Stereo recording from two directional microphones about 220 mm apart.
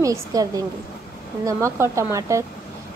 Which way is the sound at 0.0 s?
15° right (ahead or behind).